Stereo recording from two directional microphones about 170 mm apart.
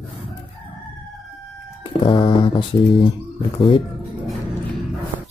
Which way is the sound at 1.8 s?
30° left (ahead or behind).